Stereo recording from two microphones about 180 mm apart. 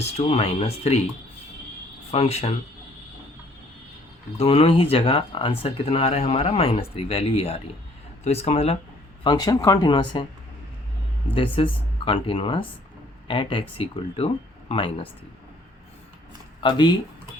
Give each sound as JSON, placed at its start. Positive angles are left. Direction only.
{"t": 0.2, "sound": "speech", "side_deg": 35}
{"t": 2.0, "sound": "speech", "side_deg": 35}
{"t": 4.4, "sound": "speech", "side_deg": 30}
{"t": 9.2, "sound": "speech", "side_deg": 20}
{"t": 11.3, "sound": "speech", "side_deg": 30}
{"t": 16.6, "sound": "speech", "side_deg": 25}